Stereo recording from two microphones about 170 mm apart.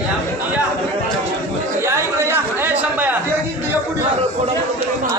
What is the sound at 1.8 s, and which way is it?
Chatter, 15° right (ahead or behind).